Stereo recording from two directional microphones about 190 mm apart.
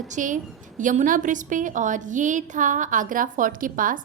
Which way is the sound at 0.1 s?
40° right (ahead or behind).